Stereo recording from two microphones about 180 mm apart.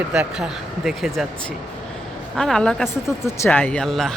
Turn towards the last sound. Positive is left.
turn(degrees=0)  # may be behind; listen again after turning